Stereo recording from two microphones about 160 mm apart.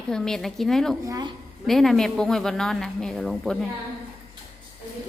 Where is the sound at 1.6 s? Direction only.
Centre (ahead or behind).